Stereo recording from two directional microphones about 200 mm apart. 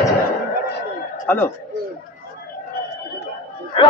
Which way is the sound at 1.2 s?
10° left (ahead or behind).